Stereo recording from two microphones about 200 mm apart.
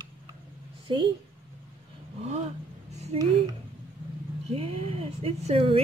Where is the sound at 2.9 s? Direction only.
30° right (ahead or behind).